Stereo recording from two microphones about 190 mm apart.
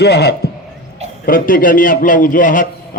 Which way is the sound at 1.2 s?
50° left (ahead or behind).